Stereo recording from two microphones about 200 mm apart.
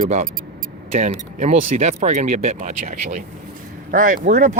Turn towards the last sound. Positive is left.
turn(degrees=-40)  # may be behind; listen again after turning